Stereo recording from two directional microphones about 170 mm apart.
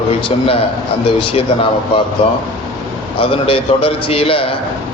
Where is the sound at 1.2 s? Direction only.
30° left (ahead or behind).